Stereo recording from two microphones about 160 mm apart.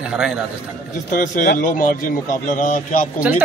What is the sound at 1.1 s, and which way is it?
A man's voice, 60° left (ahead or behind).